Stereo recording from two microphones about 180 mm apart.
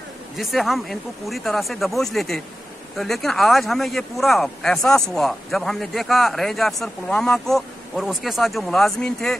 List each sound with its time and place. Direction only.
0.4 s speech: centre (ahead or behind)